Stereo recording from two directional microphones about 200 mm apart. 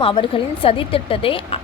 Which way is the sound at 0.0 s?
25° left (ahead or behind).